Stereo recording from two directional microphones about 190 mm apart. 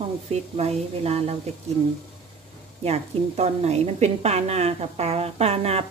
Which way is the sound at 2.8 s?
35° right (ahead or behind).